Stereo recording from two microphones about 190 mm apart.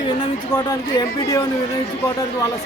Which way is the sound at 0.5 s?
20° left (ahead or behind).